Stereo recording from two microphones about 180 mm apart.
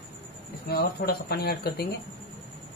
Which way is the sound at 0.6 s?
60° left (ahead or behind).